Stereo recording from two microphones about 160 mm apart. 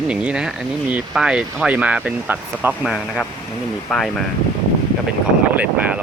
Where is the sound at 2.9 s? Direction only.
5° left (ahead or behind).